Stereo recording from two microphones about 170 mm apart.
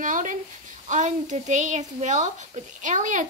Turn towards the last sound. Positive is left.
turn(degrees=-50)  # may be behind; listen again after turning